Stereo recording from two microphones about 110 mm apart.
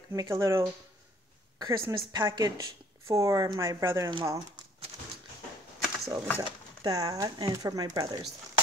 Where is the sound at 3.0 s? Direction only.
25° right (ahead or behind).